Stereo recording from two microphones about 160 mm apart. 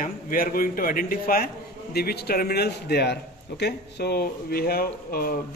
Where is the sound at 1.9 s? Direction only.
85° left.